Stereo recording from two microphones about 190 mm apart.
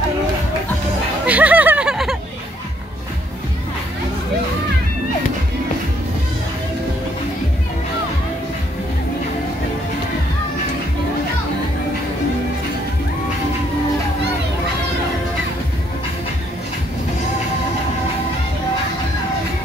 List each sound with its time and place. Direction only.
1.2 s music: 10° right (ahead or behind)